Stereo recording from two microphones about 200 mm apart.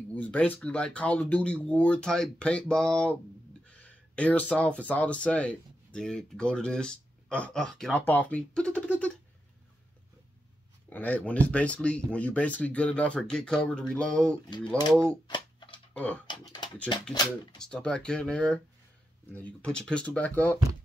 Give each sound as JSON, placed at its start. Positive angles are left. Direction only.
{"t": 0.1, "sound": "speech", "side_deg": 5}
{"t": 10.9, "sound": "speech", "side_deg": 10}
{"t": 15.2, "sound": "a sound", "side_deg": 25}
{"t": 16.0, "sound": "speech", "side_deg": 5}
{"t": 16.3, "sound": "speech", "side_deg": 20}
{"t": 17.6, "sound": "speech", "side_deg": 5}